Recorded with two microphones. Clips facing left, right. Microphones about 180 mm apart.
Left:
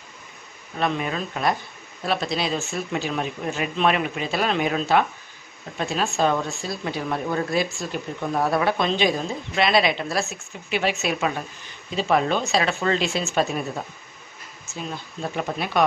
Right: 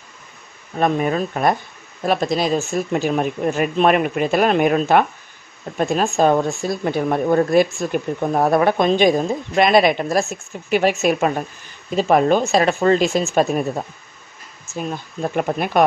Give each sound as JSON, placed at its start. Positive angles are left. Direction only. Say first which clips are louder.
{"t": 0.7, "sound": "speech", "louder": "right 7 dB", "side_deg": -45}
{"t": 14.8, "sound": "speech", "louder": "right 6 dB", "side_deg": -50}